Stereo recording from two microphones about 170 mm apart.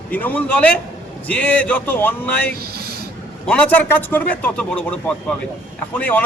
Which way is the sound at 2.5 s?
65° right (ahead or behind).